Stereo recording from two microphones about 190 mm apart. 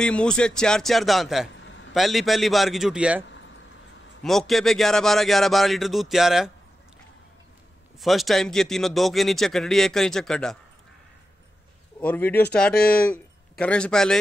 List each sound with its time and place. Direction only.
0.0 s a man's voice: 5° left (ahead or behind)
3.3 s a sound: 75° left (ahead or behind)
4.2 s a man's voice: centre (ahead or behind)
8.0 s a man's voice: centre (ahead or behind)
12.0 s speech: 10° left (ahead or behind)